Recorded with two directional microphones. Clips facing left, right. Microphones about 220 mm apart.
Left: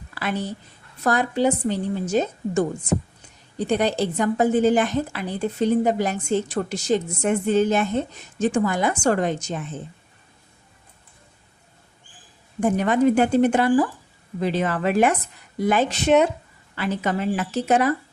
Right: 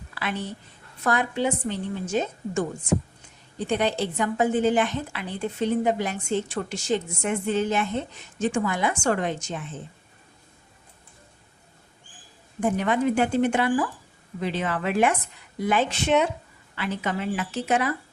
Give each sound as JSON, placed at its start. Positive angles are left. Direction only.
{"t": 0.1, "sound": "a sound", "side_deg": 40}
{"t": 1.0, "sound": "a woman's voice", "side_deg": 40}
{"t": 3.7, "sound": "a woman's voice", "side_deg": 40}
{"t": 12.5, "sound": "a woman's voice", "side_deg": 40}